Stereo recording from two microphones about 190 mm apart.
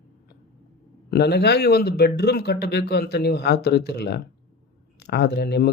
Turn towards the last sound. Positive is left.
turn(degrees=55)  # may be behind; listen again after turning